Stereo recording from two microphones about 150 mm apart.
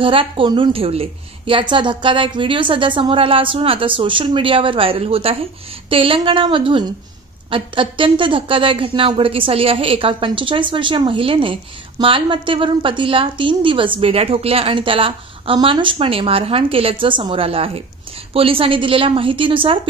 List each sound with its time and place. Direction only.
0.0 s a woman's voice: 35° right (ahead or behind)